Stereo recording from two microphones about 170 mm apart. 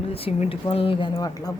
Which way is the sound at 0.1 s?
35° left (ahead or behind).